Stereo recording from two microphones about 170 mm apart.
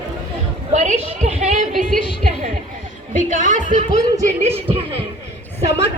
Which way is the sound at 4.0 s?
20° right (ahead or behind).